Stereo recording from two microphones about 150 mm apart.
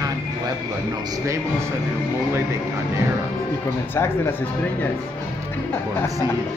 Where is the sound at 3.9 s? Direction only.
15° left (ahead or behind).